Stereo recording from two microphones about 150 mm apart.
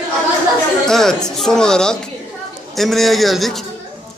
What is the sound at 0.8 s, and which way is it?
A man's voice, 5° left (ahead or behind).